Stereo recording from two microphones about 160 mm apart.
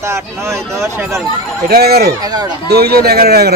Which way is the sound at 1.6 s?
75° right (ahead or behind).